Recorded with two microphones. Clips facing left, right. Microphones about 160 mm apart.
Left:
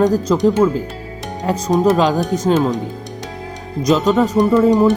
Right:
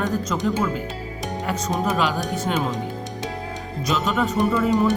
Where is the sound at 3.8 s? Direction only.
40° left (ahead or behind).